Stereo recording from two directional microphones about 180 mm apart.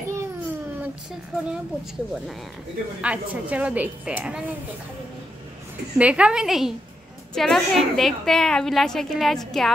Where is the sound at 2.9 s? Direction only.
5° right (ahead or behind).